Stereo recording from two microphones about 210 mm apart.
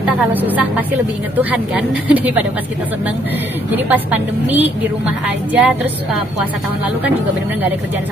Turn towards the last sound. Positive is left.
turn(degrees=-10)  # may be behind; listen again after turning